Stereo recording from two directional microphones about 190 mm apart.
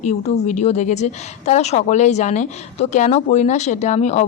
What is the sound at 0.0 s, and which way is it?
Speech, 40° left (ahead or behind).